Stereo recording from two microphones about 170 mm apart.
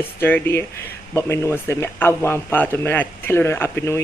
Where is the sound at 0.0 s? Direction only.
10° left (ahead or behind).